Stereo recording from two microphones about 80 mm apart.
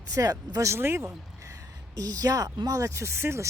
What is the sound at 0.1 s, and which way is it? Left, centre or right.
Speech, right.